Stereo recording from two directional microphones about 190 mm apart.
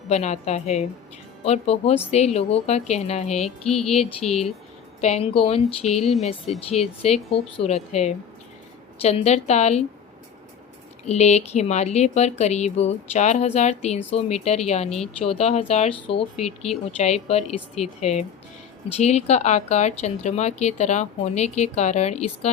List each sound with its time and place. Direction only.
0.1 s speech: 35° left (ahead or behind)
3.7 s speech: centre (ahead or behind)
3.9 s speech: 30° left (ahead or behind)
11.0 s speech: 35° left (ahead or behind)
14.8 s speech: 5° left (ahead or behind)
15.2 s speech: 30° left (ahead or behind)